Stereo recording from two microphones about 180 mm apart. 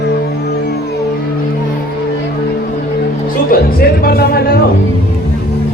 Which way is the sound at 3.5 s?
55° left (ahead or behind).